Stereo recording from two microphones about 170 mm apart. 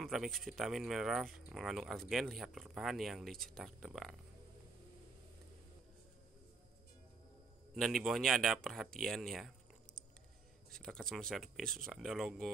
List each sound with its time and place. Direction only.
0.0 s speech: centre (ahead or behind)
7.7 s speech: centre (ahead or behind)
10.7 s speech: 5° left (ahead or behind)